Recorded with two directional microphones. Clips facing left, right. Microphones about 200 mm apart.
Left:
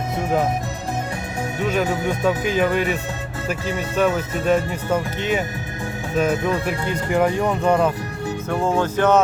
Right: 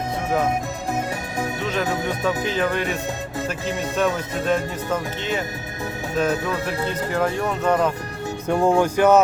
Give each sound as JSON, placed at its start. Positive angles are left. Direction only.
{"t": 1.6, "sound": "speech", "side_deg": 10}
{"t": 8.4, "sound": "speech", "side_deg": -15}